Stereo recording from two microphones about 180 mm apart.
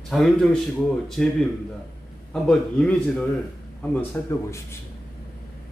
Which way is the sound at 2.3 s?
5° left (ahead or behind).